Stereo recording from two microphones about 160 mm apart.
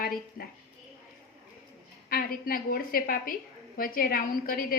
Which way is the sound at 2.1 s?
65° left (ahead or behind).